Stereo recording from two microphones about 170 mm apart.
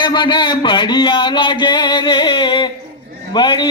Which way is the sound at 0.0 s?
25° left (ahead or behind).